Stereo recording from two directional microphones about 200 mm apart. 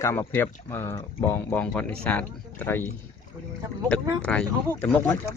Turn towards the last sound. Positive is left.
turn(degrees=10)  # may be behind; listen again after turning